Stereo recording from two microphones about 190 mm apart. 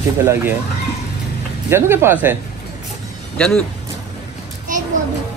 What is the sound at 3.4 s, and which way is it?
Speech, 5° left (ahead or behind).